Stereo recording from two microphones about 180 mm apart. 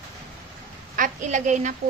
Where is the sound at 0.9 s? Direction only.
45° right (ahead or behind).